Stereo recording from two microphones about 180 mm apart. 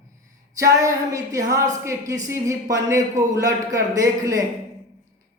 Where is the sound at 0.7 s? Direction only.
20° right (ahead or behind).